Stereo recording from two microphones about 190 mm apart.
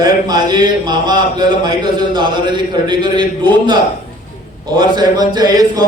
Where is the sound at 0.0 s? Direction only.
20° right (ahead or behind).